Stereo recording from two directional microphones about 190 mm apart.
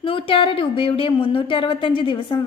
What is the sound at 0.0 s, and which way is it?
A woman's voice, 30° left (ahead or behind).